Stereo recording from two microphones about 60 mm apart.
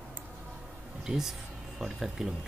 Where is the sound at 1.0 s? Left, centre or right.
Centre.